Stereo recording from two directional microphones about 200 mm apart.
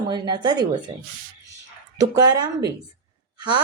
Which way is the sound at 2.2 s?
20° right (ahead or behind).